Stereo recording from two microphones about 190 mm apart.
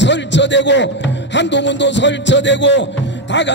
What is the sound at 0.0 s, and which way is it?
A man's voice, 70° left (ahead or behind).